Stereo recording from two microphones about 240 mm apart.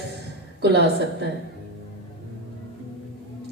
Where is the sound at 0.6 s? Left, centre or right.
Right.